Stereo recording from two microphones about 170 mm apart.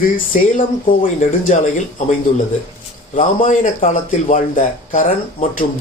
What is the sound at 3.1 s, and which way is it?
A man's voice, 50° left (ahead or behind).